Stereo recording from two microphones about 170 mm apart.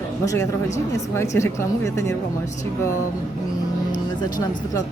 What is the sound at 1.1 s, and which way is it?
Speech, 15° left (ahead or behind).